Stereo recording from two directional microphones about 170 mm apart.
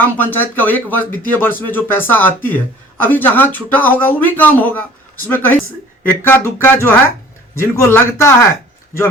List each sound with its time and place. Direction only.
0.2 s speech: 10° left (ahead or behind)